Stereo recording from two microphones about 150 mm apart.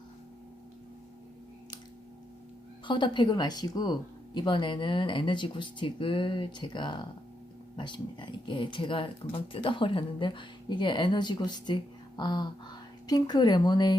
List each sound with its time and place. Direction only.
2.8 s a woman's voice: 30° left (ahead or behind)